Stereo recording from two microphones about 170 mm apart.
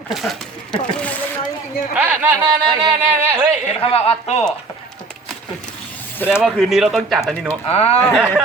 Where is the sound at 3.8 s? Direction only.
35° left (ahead or behind).